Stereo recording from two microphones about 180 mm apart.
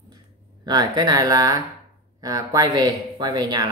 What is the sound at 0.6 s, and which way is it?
Speech, 20° right (ahead or behind).